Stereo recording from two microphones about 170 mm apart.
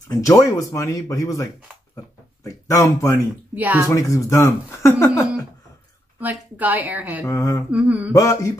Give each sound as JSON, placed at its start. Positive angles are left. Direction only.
{"t": 0.1, "sound": "speech", "side_deg": 20}
{"t": 3.5, "sound": "a woman's voice", "side_deg": -10}
{"t": 3.9, "sound": "speech", "side_deg": 20}
{"t": 6.1, "sound": "a woman's voice", "side_deg": -10}
{"t": 7.2, "sound": "speech", "side_deg": 20}
{"t": 7.7, "sound": "a woman's voice", "side_deg": -10}
{"t": 8.1, "sound": "speech", "side_deg": 20}